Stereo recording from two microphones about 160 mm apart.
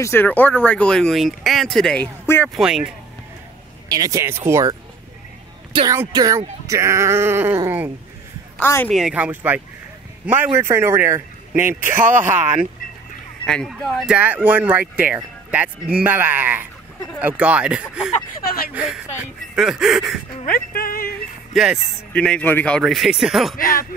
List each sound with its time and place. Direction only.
0.0 s speech: 15° left (ahead or behind)
2.5 s speech: 5° right (ahead or behind)
3.9 s speech: 20° right (ahead or behind)
8.5 s a man's voice: 15° left (ahead or behind)
8.9 s speech: 5° right (ahead or behind)
13.5 s speech: 5° left (ahead or behind)
20.4 s speech: 65° left (ahead or behind)
21.8 s speech: 5° left (ahead or behind)
23.6 s speech: 65° left (ahead or behind)